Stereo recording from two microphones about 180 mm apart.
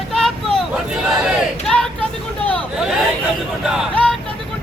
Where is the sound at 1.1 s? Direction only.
Centre (ahead or behind).